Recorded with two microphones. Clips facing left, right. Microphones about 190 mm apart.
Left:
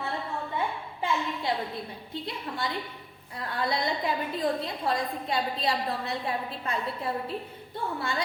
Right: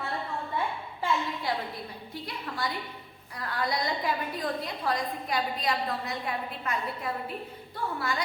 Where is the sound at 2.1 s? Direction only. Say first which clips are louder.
Left 3 dB; 25° left (ahead or behind).